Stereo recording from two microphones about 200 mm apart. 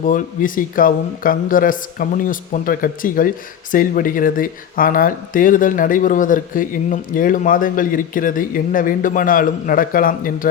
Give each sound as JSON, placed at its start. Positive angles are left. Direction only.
{"t": 0.0, "sound": "speech", "side_deg": 40}